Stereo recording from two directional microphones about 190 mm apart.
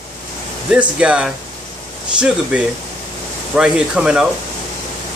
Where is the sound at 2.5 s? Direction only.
5° right (ahead or behind).